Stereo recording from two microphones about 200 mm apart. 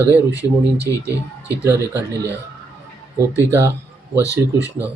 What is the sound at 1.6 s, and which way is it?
Speech, 15° right (ahead or behind).